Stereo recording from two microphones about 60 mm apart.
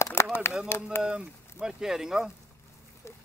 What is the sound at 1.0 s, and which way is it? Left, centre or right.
Speech, centre.